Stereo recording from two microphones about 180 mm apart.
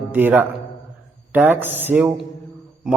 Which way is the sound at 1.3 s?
10° right (ahead or behind).